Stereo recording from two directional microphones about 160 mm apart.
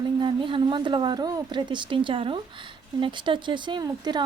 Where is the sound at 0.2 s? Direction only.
30° right (ahead or behind).